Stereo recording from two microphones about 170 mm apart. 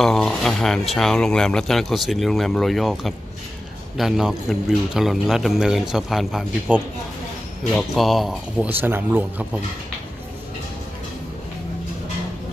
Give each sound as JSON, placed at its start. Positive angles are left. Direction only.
{"t": 0.0, "sound": "speech", "side_deg": 0}
{"t": 8.6, "sound": "speech", "side_deg": -10}